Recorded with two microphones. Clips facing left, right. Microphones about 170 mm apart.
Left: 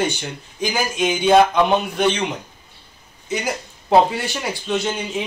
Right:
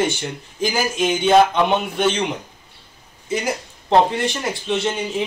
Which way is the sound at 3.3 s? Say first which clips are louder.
Right 1 dB; centre (ahead or behind).